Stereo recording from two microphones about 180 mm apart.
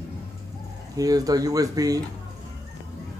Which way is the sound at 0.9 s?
20° right (ahead or behind).